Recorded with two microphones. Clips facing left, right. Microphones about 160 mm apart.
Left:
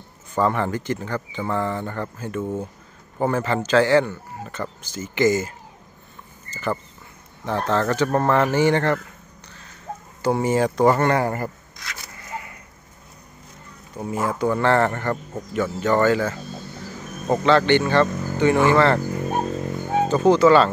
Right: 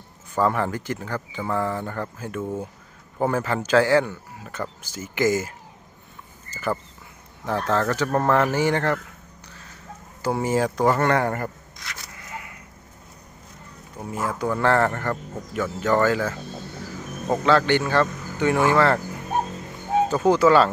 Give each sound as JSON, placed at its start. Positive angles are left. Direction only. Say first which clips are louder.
{"t": 0.3, "sound": "speech", "louder": "left 1 dB", "side_deg": -5}
{"t": 6.5, "sound": "speech", "louder": "left 1 dB", "side_deg": -5}
{"t": 10.2, "sound": "speech", "louder": "left 3 dB", "side_deg": 0}
{"t": 13.9, "sound": "speech", "louder": "left 4 dB", "side_deg": 0}
{"t": 20.1, "sound": "speech", "louder": "left 3 dB", "side_deg": -5}